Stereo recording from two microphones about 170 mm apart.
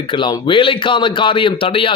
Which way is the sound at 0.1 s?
30° left (ahead or behind).